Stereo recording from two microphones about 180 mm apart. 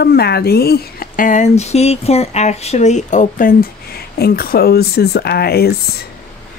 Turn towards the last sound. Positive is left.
turn(degrees=60)  # may be behind; listen again after turning